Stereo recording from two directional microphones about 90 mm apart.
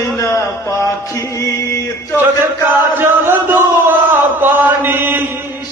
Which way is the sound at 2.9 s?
25° right (ahead or behind).